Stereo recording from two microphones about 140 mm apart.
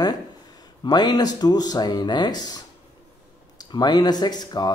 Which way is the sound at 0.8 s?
30° left (ahead or behind).